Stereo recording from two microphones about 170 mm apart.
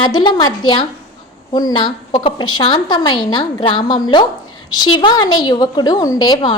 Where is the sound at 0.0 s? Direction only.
25° left (ahead or behind).